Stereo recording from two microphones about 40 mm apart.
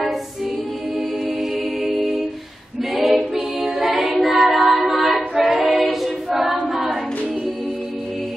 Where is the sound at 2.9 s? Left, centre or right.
Centre.